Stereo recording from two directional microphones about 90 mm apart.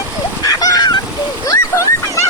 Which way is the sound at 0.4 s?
45° left (ahead or behind).